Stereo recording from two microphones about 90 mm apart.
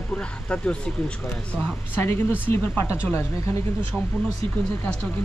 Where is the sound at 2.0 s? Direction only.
25° left (ahead or behind).